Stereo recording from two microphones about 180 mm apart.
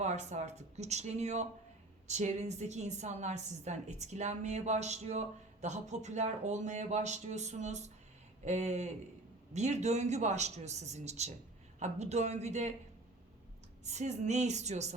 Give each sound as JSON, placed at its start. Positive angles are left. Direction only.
{"t": 0.0, "sound": "a woman's voice", "side_deg": -40}
{"t": 13.8, "sound": "a woman's voice", "side_deg": -40}